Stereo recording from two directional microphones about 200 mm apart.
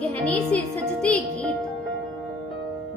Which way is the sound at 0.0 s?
5° left (ahead or behind).